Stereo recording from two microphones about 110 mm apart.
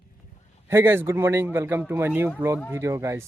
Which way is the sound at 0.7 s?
20° right (ahead or behind).